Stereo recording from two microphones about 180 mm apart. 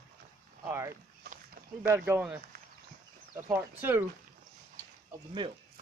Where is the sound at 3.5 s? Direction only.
10° right (ahead or behind).